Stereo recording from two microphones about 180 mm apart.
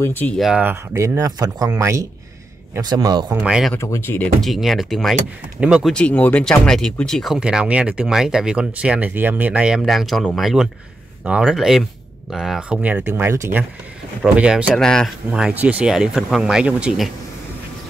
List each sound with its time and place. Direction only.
0.0 s speech: 10° left (ahead or behind)
0.4 s a man's voice: 5° right (ahead or behind); by 3.3 s 25° right (ahead or behind)
3.3 s speech: 10° right (ahead or behind)
3.7 s speech: 15° left (ahead or behind); by 5.9 s 5° right (ahead or behind)
5.9 s speech: 5° left (ahead or behind)